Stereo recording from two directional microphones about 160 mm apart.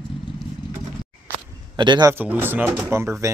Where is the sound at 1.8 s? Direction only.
30° right (ahead or behind).